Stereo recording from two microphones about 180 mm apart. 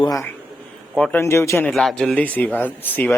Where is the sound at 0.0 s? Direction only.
20° left (ahead or behind).